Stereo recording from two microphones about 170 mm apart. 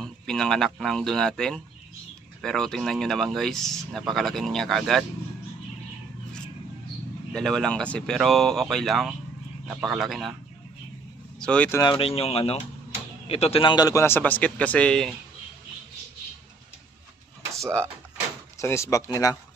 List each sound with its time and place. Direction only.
0.0 s a sound: 5° left (ahead or behind)
0.7 s speech: centre (ahead or behind)
7.3 s speech: 5° left (ahead or behind)
11.3 s speech: 5° left (ahead or behind)
11.8 s a man's voice: 30° left (ahead or behind); by 15.1 s 5° left (ahead or behind)
17.6 s speech: 5° left (ahead or behind)
18.6 s a man's voice: 15° left (ahead or behind)